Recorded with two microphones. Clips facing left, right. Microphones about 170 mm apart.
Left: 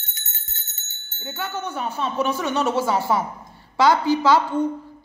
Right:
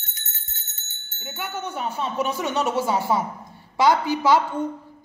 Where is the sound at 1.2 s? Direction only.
20° right (ahead or behind).